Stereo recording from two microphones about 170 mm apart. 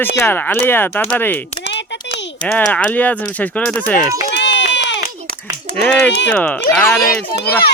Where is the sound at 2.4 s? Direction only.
10° left (ahead or behind).